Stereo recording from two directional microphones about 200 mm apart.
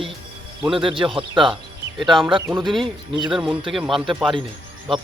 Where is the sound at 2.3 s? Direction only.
25° right (ahead or behind).